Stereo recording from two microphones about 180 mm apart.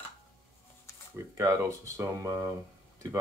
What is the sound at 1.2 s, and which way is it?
Speech, 15° right (ahead or behind).